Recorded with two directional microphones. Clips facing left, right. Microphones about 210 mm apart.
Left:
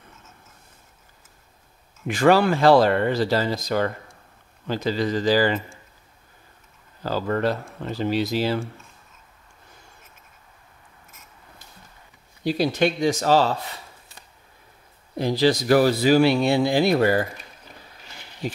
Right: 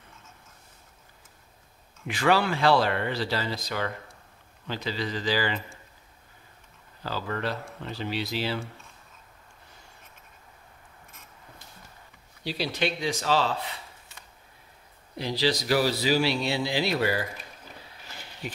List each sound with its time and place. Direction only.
2.0 s speech: 45° left (ahead or behind)
7.0 s speech: 45° left (ahead or behind)
12.4 s speech: 50° left (ahead or behind)
15.1 s speech: 50° left (ahead or behind)